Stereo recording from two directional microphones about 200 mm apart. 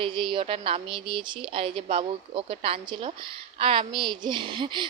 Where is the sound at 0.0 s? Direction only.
25° right (ahead or behind).